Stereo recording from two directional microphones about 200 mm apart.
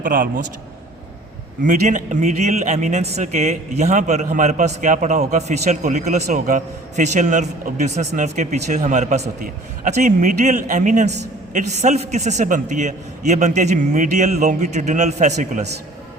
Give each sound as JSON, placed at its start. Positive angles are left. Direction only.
{"t": 0.0, "sound": "a man's voice", "side_deg": -45}
{"t": 1.6, "sound": "a man's voice", "side_deg": -40}